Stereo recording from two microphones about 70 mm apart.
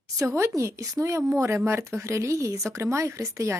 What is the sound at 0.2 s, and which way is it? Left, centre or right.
Speech, right.